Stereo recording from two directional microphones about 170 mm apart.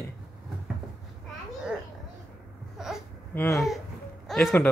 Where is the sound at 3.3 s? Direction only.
10° left (ahead or behind).